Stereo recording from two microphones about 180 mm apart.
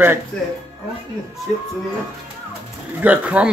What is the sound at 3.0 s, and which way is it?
Speech, 10° right (ahead or behind).